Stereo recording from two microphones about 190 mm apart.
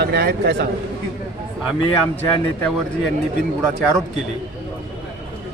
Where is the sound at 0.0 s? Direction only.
55° right (ahead or behind).